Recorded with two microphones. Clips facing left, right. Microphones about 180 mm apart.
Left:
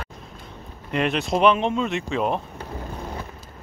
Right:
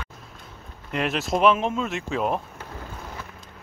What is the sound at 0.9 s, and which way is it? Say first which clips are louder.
Speech: left 2 dB; centre (ahead or behind).